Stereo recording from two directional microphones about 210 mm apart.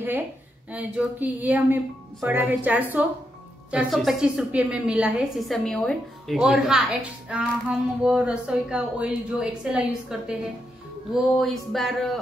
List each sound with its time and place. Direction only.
0.7 s a woman's voice: 5° right (ahead or behind)
11.3 s a woman's voice: centre (ahead or behind)